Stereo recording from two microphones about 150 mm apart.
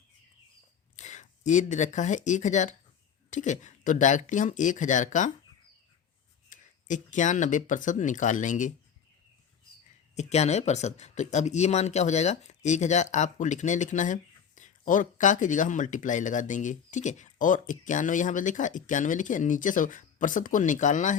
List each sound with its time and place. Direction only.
0.9 s speech: 50° left (ahead or behind)
6.5 s speech: 55° left (ahead or behind)
10.2 s speech: 45° left (ahead or behind)